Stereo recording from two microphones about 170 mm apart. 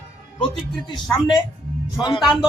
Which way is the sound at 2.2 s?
5° right (ahead or behind).